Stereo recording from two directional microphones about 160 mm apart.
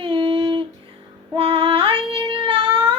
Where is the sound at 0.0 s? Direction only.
35° right (ahead or behind).